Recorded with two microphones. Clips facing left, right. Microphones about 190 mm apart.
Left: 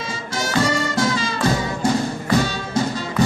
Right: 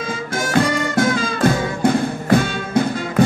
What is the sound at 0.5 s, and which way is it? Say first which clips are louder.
Music: right 2 dB; 55° right (ahead or behind).